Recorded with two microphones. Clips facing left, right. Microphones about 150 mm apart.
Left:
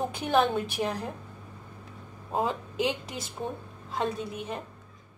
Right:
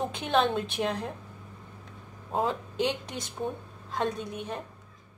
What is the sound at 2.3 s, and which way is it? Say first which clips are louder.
Speech: even; centre (ahead or behind).